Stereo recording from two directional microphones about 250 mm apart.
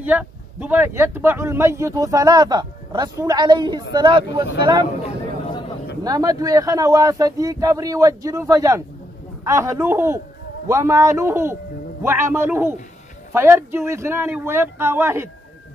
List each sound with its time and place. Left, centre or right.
0.0 s speech: centre
6.0 s speech: centre